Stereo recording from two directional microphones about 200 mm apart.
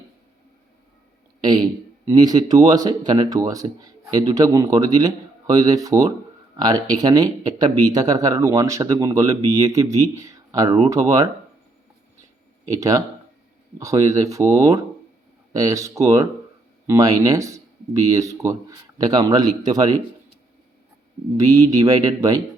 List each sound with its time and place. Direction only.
1.4 s a sound: 20° right (ahead or behind)
2.0 s speech: 20° right (ahead or behind)
12.6 s speech: 15° right (ahead or behind)
21.3 s speech: 15° right (ahead or behind)